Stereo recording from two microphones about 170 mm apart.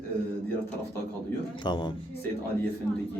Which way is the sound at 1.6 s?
25° left (ahead or behind).